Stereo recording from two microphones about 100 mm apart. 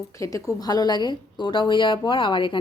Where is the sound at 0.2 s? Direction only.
35° left (ahead or behind).